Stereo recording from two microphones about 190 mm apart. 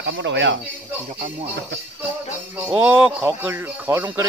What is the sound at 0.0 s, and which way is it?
Speech, 70° right (ahead or behind).